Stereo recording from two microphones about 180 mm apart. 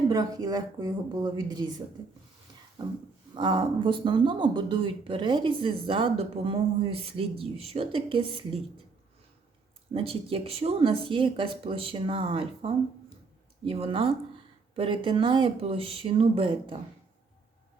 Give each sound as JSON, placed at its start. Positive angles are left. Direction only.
{"t": 0.1, "sound": "speech", "side_deg": -20}
{"t": 2.8, "sound": "speech", "side_deg": -25}
{"t": 9.9, "sound": "speech", "side_deg": -30}